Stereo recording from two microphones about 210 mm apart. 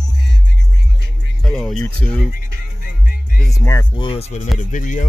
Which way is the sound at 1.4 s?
Centre (ahead or behind).